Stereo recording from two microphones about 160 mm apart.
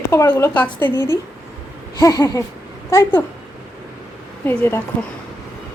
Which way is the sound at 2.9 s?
15° left (ahead or behind).